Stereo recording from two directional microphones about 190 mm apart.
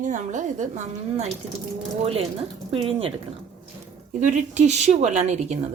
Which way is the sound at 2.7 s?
30° right (ahead or behind).